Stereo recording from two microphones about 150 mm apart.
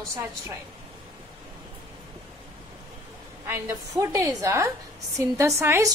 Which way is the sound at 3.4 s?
15° right (ahead or behind).